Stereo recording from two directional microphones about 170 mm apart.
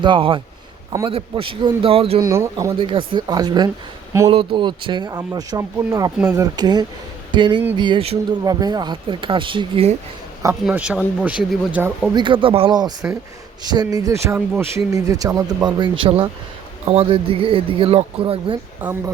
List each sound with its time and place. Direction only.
0.0 s speech: 30° right (ahead or behind)
2.2 s speech: 15° right (ahead or behind)
2.7 s speech: 30° right (ahead or behind)
8.4 s speech: 25° right (ahead or behind)
10.5 s speech: 5° right (ahead or behind)
12.1 s speech: 30° right (ahead or behind)
18.8 s speech: 15° right (ahead or behind)